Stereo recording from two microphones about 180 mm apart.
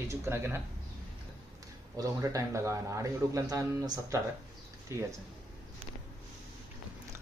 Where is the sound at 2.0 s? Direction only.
15° right (ahead or behind).